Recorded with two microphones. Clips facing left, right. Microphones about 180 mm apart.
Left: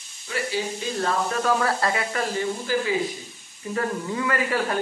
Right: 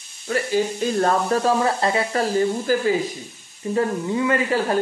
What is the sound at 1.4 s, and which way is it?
Speech, 25° right (ahead or behind).